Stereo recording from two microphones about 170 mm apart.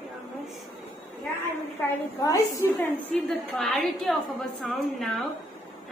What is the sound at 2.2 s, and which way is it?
Speech, 20° left (ahead or behind).